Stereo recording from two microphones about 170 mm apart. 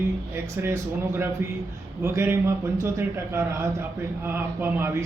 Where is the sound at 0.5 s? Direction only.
15° right (ahead or behind).